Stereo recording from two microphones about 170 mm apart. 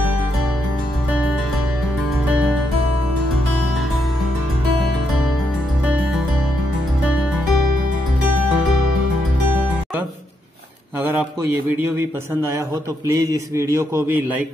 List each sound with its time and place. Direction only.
11.8 s a man's voice: 15° right (ahead or behind)